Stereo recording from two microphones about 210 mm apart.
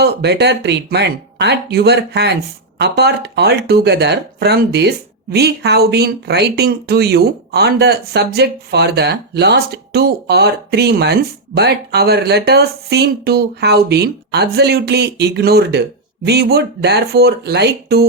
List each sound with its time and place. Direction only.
0.0 s speech: 55° right (ahead or behind)